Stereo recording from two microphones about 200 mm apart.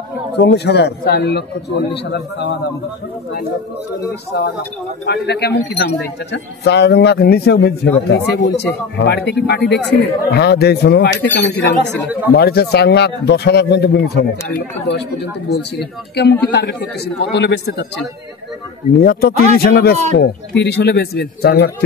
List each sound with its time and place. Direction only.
0.3 s speech: 55° left (ahead or behind)
4.3 s speech: 55° left (ahead or behind)